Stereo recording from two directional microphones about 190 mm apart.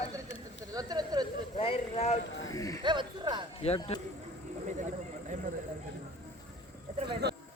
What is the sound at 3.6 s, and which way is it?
Speech, 35° left (ahead or behind).